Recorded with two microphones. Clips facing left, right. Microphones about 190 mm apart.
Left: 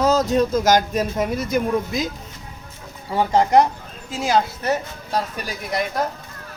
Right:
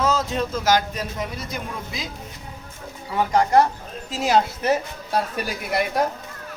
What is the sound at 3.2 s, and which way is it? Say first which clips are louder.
Speech: left 2 dB; 20° left (ahead or behind).